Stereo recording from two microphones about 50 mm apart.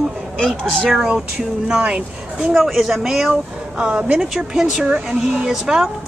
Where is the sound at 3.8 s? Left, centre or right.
Right.